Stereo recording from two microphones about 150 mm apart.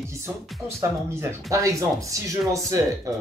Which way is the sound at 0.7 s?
15° right (ahead or behind).